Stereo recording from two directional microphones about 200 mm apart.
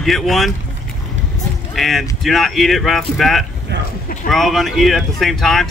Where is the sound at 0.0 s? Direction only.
Centre (ahead or behind).